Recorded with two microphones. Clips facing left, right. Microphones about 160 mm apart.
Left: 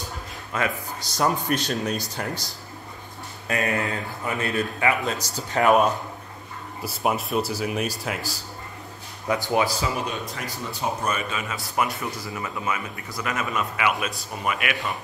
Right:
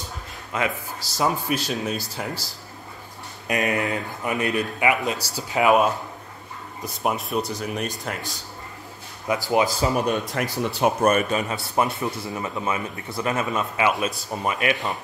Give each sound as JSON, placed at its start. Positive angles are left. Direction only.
{"t": 0.5, "sound": "speech", "side_deg": -20}
{"t": 1.0, "sound": "speech", "side_deg": -5}
{"t": 3.4, "sound": "a man's voice", "side_deg": -15}
{"t": 9.9, "sound": "speech", "side_deg": -60}